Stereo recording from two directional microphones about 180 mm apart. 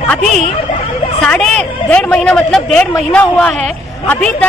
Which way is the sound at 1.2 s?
5° left (ahead or behind).